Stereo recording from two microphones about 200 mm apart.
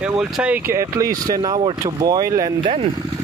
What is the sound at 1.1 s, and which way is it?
Speech, 45° right (ahead or behind).